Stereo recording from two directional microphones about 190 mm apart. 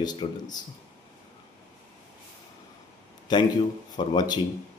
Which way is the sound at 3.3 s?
25° left (ahead or behind).